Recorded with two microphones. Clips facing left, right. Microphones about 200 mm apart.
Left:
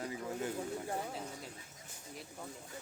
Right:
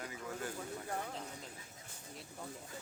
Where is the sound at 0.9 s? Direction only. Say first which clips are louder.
Left 2 dB; 15° left (ahead or behind).